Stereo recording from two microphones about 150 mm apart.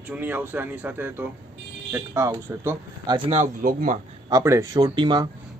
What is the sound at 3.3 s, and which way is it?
Speech, 55° right (ahead or behind).